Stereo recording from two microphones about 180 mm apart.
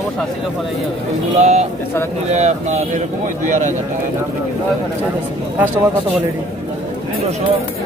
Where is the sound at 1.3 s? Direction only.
35° right (ahead or behind).